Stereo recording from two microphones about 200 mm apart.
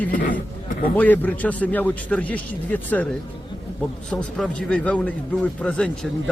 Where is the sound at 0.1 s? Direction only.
40° left (ahead or behind).